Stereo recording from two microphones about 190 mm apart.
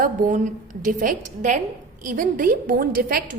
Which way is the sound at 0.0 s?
45° right (ahead or behind).